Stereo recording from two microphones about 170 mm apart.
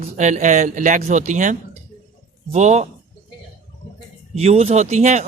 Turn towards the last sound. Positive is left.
turn(degrees=-45)  # may be behind; listen again after turning